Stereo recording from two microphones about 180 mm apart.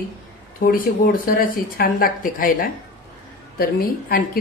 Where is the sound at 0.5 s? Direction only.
55° left (ahead or behind).